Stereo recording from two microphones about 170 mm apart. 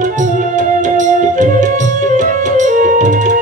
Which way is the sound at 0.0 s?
45° right (ahead or behind).